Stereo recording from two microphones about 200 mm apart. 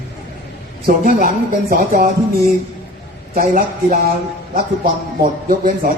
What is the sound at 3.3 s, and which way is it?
Speech, 45° right (ahead or behind).